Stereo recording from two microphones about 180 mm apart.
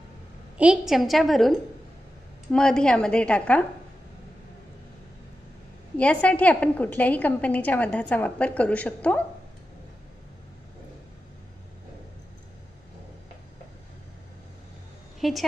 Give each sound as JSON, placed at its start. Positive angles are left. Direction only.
{"t": 0.6, "sound": "a woman's voice", "side_deg": -5}
{"t": 2.5, "sound": "a woman's voice", "side_deg": 5}
{"t": 5.9, "sound": "a woman's voice", "side_deg": 5}
{"t": 15.1, "sound": "a sound", "side_deg": 0}